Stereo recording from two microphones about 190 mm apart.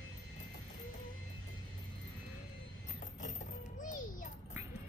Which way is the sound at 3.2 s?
40° left (ahead or behind).